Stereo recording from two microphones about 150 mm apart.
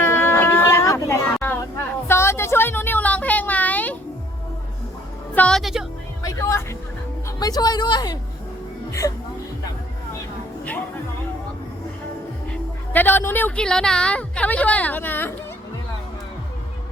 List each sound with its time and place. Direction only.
0.0 s music: 15° left (ahead or behind)
2.0 s a sound: 15° left (ahead or behind)
5.3 s music: 5° left (ahead or behind)
6.2 s music: 20° left (ahead or behind)
7.3 s a woman's voice: 25° left (ahead or behind)
8.9 s music: 20° left (ahead or behind)
12.9 s speech: 10° left (ahead or behind)